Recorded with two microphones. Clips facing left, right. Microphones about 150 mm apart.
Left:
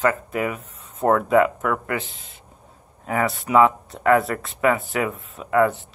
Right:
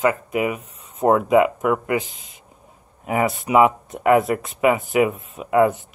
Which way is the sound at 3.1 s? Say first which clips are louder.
Right 2 dB; 20° right (ahead or behind).